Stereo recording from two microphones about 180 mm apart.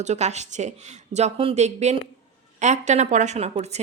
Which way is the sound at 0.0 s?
40° right (ahead or behind).